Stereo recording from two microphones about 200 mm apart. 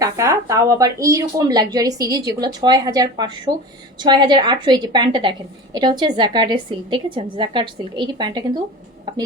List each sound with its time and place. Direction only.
0.0 s a woman's voice: 15° right (ahead or behind)